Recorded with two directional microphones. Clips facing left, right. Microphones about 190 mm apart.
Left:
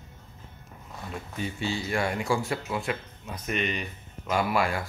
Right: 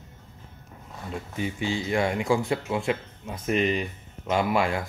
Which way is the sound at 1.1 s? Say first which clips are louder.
Right 4 dB; 15° right (ahead or behind).